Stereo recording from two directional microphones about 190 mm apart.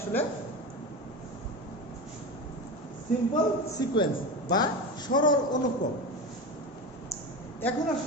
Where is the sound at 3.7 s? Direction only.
20° left (ahead or behind).